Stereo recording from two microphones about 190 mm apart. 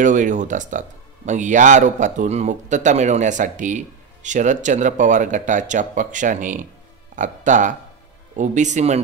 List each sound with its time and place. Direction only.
0.0 s speech: 40° right (ahead or behind)